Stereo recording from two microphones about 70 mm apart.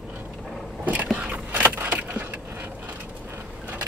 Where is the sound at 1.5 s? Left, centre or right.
Right.